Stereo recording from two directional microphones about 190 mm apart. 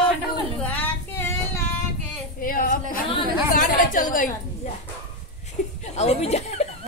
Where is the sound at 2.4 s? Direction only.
50° left (ahead or behind).